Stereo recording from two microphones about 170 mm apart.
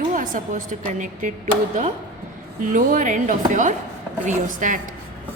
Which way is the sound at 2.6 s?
50° right (ahead or behind).